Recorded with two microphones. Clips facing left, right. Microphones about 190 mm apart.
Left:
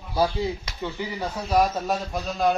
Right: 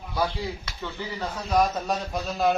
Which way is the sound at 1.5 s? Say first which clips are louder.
Left 1 dB; centre (ahead or behind).